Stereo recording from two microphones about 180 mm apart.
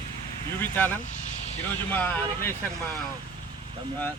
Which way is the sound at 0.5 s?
10° left (ahead or behind).